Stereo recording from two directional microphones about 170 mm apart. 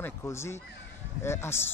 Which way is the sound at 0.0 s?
15° left (ahead or behind).